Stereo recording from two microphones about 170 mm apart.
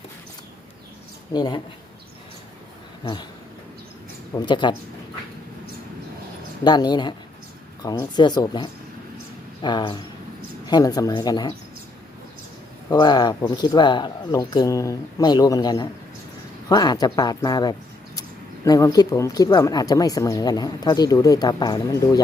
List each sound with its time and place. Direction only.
1.3 s speech: 25° left (ahead or behind)
3.0 s speech: 30° left (ahead or behind)
4.4 s speech: 25° left (ahead or behind)
6.7 s speech: 25° left (ahead or behind)
12.9 s speech: 25° left (ahead or behind)